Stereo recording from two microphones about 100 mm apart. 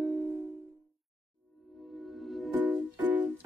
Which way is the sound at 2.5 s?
15° right (ahead or behind).